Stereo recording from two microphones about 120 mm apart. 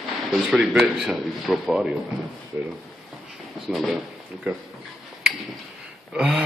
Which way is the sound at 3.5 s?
Centre (ahead or behind).